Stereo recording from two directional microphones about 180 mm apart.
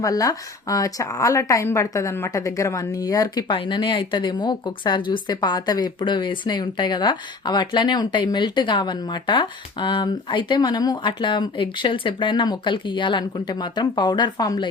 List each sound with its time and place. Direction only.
0.0 s speech: 20° left (ahead or behind)